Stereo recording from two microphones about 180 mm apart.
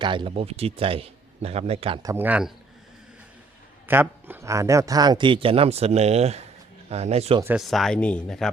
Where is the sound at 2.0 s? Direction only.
15° right (ahead or behind).